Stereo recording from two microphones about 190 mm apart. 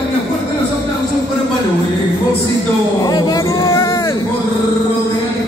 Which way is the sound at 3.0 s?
20° left (ahead or behind).